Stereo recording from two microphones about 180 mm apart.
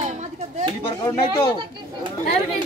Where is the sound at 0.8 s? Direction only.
30° left (ahead or behind).